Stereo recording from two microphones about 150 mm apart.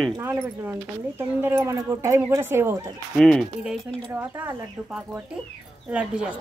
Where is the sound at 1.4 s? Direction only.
15° right (ahead or behind).